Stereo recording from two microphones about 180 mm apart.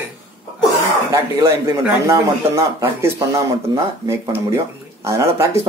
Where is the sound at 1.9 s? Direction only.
15° right (ahead or behind).